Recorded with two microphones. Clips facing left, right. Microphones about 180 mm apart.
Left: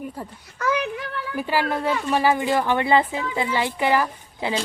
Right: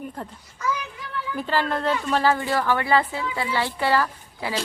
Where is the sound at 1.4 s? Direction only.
10° left (ahead or behind).